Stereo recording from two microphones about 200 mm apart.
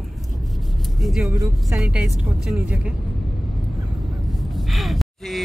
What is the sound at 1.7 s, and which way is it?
Speech, 5° right (ahead or behind).